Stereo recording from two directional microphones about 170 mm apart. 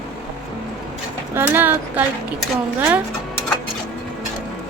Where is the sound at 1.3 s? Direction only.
10° right (ahead or behind).